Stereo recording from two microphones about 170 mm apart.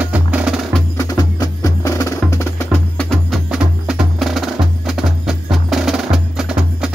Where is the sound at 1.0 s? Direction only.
20° left (ahead or behind).